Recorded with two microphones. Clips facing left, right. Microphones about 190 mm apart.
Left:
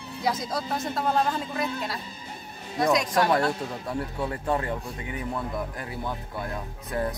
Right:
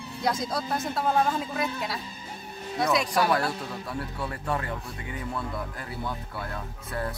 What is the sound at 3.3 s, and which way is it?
Speech, 25° left (ahead or behind).